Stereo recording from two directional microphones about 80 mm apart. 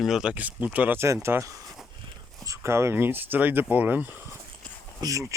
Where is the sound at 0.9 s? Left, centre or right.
Right.